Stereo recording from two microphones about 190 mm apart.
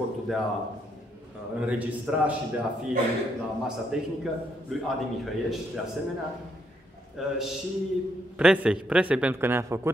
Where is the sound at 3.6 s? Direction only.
5° right (ahead or behind).